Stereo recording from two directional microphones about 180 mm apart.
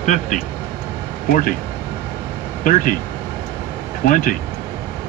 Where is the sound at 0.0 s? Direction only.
45° left (ahead or behind).